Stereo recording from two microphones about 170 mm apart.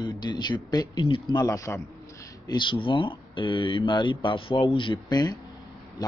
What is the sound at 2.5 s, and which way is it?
Speech, 30° left (ahead or behind).